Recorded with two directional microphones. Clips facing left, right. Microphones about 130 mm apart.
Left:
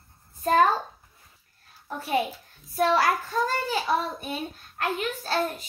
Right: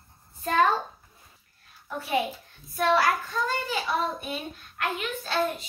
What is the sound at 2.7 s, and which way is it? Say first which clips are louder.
Child singing: left 1 dB; 40° left (ahead or behind).